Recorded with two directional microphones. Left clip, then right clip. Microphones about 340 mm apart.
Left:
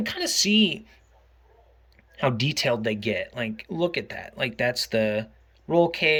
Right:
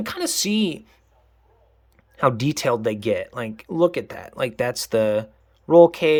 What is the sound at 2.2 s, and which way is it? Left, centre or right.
Speech, right.